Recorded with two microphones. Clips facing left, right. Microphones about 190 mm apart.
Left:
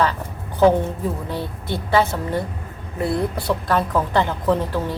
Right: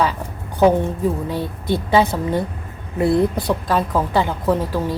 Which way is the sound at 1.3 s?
15° right (ahead or behind).